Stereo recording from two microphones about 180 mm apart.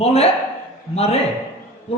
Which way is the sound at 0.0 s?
35° left (ahead or behind).